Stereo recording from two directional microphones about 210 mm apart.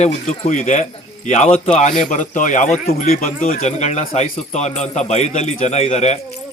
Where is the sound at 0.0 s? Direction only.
35° left (ahead or behind).